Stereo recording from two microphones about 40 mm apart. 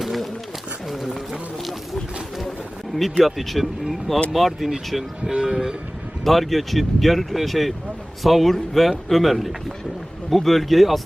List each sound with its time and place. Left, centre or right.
0.0 s a sound: centre
2.9 s speech: centre
5.3 s train: right
6.2 s speech: centre